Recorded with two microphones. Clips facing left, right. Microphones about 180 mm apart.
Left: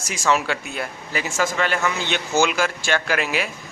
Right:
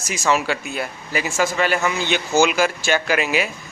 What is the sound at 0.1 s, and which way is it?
A man's voice, 5° right (ahead or behind).